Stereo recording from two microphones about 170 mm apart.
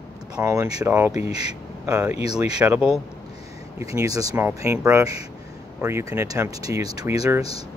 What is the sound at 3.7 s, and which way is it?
Speech, 20° right (ahead or behind).